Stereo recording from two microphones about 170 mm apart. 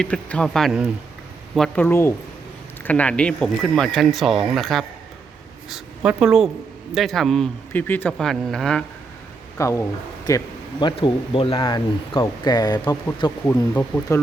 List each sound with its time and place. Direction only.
0.0 s a woman's voice: 5° left (ahead or behind)
9.6 s speech: 15° left (ahead or behind)